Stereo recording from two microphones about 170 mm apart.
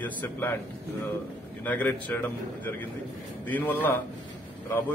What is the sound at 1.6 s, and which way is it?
A man's voice, 10° left (ahead or behind).